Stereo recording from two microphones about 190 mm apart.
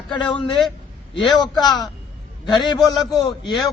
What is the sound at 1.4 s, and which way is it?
Speech, 20° left (ahead or behind).